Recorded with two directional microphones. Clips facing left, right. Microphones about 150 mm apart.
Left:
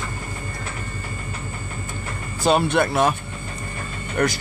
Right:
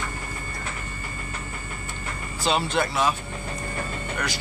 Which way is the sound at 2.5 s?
55° left (ahead or behind).